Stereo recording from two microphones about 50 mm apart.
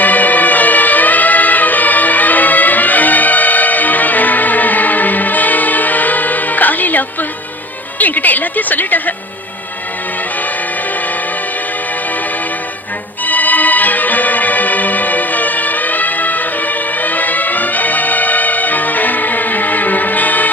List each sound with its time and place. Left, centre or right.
0.0 s music: left
7.9 s speech: left
13.2 s music: left